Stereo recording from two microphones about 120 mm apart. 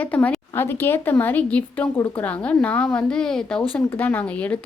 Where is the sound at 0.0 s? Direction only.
10° left (ahead or behind).